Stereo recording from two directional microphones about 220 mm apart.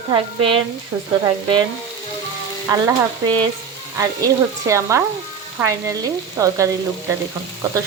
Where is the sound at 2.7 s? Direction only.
20° right (ahead or behind).